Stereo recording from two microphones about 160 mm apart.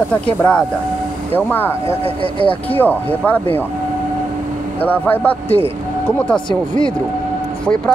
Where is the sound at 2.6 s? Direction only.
10° left (ahead or behind).